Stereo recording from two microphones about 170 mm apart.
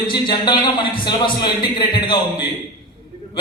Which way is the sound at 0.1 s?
25° left (ahead or behind).